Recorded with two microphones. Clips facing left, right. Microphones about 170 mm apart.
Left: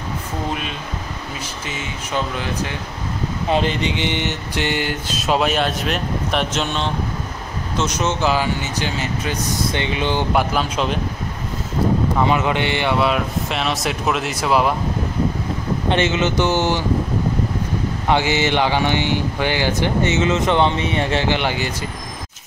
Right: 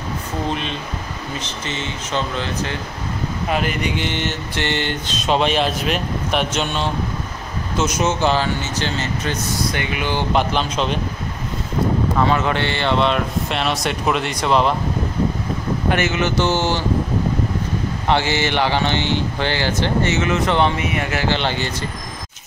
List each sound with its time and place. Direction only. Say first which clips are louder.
1.4 s mantra: right 2 dB; 10° left (ahead or behind)
3.4 s mantra: left 3 dB; 30° left (ahead or behind); by 6.9 s centre (ahead or behind)
7.7 s speech: right 2 dB; 5° right (ahead or behind)
8.3 s mantra: even; 10° left (ahead or behind)
9.7 s speech: left 4 dB; 25° left (ahead or behind)
10.3 s speech: even; 5° left (ahead or behind)
12.2 s speech: right 1 dB; 15° left (ahead or behind)
15.9 s speech: left 2 dB; 25° left (ahead or behind)
18.0 s mantra: left 1 dB; 15° left (ahead or behind)
21.3 s mantra: left 1 dB; 10° left (ahead or behind)